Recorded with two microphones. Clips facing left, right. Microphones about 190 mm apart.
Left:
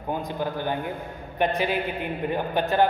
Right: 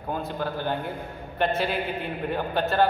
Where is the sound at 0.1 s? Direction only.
15° left (ahead or behind).